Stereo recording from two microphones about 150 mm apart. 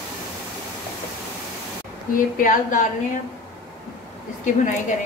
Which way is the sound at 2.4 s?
60° left (ahead or behind).